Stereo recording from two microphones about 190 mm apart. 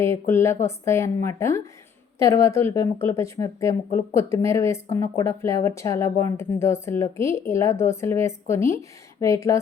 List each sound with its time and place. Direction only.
0.0 s speech: 15° left (ahead or behind)